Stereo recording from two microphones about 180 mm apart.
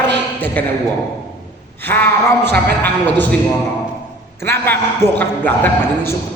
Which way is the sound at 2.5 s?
65° right (ahead or behind).